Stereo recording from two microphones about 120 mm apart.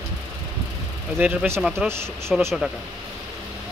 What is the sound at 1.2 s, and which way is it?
Speech, 15° right (ahead or behind).